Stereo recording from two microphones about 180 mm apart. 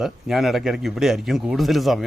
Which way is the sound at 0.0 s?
Centre (ahead or behind).